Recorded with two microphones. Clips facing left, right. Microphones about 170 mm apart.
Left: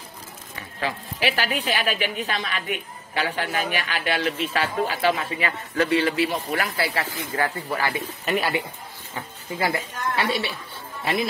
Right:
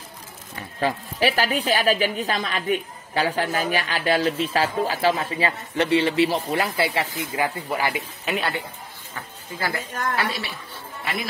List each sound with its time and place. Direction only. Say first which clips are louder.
0.7 s a woman's voice: right 5 dB; 40° right (ahead or behind); by 8.0 s 15° right (ahead or behind)
8.3 s speech: left 2 dB; 5° left (ahead or behind)
9.6 s a woman's voice: left 2 dB; 25° left (ahead or behind)